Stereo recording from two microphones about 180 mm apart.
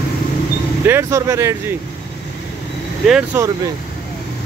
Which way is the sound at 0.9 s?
15° right (ahead or behind).